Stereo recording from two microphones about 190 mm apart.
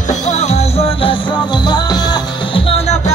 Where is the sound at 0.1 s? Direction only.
35° left (ahead or behind).